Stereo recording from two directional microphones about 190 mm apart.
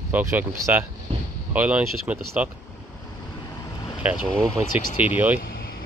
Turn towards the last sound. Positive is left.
turn(degrees=50)  # may be behind; listen again after turning